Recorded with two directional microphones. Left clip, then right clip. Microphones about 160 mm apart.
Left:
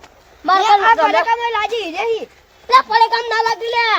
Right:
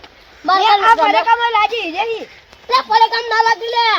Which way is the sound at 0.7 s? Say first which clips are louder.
Right 1 dB; 20° left (ahead or behind).